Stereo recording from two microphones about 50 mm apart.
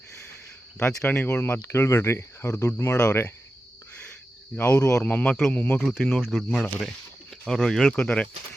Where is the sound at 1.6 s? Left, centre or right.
Left.